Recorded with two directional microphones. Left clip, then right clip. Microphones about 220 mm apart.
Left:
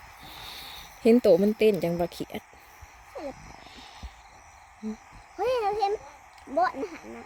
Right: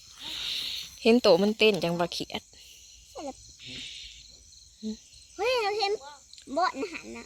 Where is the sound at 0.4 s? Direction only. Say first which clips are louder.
Right 9 dB; 35° left (ahead or behind).